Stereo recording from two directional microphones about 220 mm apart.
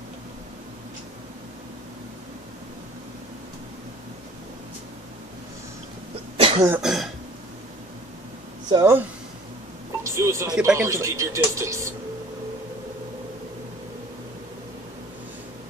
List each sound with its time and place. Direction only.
6.3 s cough: 25° right (ahead or behind)
6.7 s speech: centre (ahead or behind)
8.6 s speech: 15° right (ahead or behind)
10.0 s speech: 15° right (ahead or behind)